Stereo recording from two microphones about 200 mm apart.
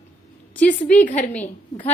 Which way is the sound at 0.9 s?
35° left (ahead or behind).